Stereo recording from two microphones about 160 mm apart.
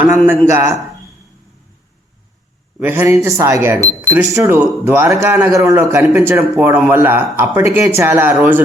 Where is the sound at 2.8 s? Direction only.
10° right (ahead or behind).